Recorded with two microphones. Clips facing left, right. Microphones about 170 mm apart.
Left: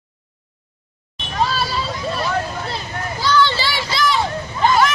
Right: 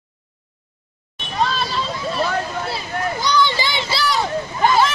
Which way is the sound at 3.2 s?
15° right (ahead or behind).